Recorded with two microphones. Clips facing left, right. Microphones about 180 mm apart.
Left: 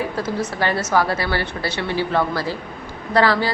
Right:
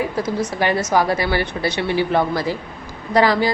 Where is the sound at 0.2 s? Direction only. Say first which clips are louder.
Right 2 dB; 15° right (ahead or behind).